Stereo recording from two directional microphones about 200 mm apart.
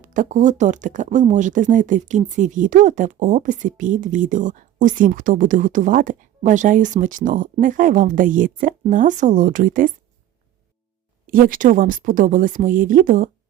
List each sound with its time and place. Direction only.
0.0 s speech: 40° right (ahead or behind)
11.3 s speech: 45° right (ahead or behind)